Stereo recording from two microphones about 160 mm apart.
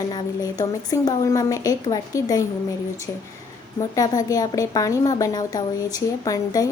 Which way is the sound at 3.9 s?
20° left (ahead or behind).